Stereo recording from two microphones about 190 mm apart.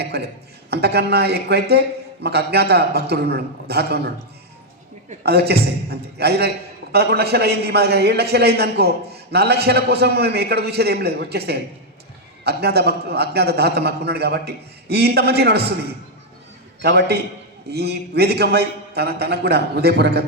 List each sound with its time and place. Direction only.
0.1 s a man's voice: 60° right (ahead or behind)
5.2 s a man's voice: 60° right (ahead or behind)
16.8 s a man's voice: 60° right (ahead or behind)